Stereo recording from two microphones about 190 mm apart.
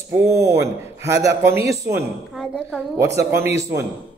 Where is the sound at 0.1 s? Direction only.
15° right (ahead or behind).